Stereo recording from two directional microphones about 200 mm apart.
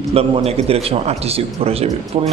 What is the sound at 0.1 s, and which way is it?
A man's voice, 30° right (ahead or behind).